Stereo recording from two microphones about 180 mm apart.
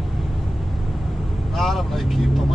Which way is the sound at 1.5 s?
Centre (ahead or behind).